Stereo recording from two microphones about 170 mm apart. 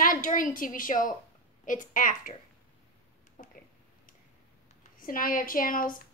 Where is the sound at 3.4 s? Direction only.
50° left (ahead or behind).